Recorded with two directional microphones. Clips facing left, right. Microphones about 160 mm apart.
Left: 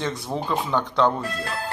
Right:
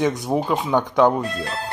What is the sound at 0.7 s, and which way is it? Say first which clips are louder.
Speech: right 5 dB; 15° right (ahead or behind).